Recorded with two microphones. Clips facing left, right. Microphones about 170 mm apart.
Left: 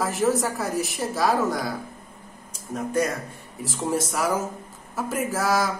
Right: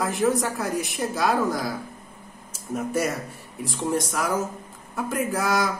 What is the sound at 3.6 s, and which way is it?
Speech, 5° left (ahead or behind).